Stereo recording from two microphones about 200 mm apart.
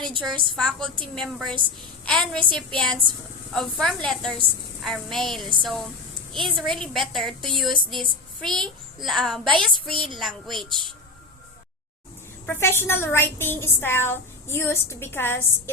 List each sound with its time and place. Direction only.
0.1 s a woman's voice: 25° right (ahead or behind)
0.5 s a woman's voice: 5° left (ahead or behind)
12.5 s a woman's voice: 10° left (ahead or behind)